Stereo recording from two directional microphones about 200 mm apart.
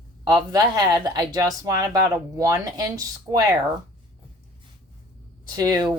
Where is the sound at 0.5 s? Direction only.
20° right (ahead or behind).